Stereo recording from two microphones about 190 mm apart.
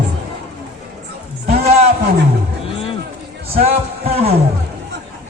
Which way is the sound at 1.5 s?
35° right (ahead or behind).